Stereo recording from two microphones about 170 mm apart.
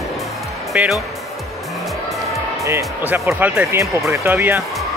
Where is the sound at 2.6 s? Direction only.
15° right (ahead or behind).